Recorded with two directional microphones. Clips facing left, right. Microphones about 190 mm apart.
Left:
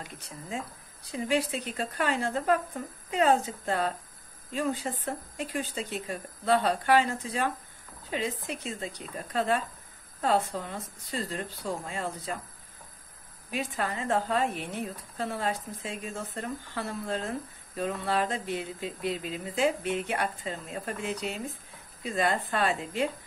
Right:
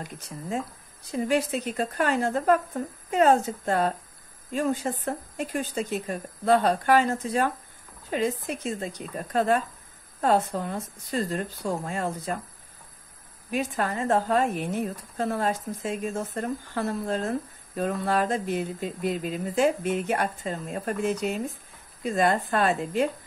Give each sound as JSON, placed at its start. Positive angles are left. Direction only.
{"t": 1.1, "sound": "speech", "side_deg": -45}
{"t": 13.5, "sound": "speech", "side_deg": -45}